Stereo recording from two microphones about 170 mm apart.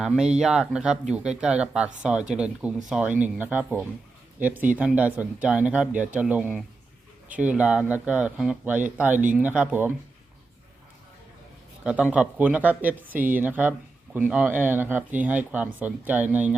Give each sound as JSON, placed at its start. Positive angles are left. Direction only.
{"t": 0.3, "sound": "speech", "side_deg": -5}
{"t": 11.8, "sound": "a man's voice", "side_deg": -5}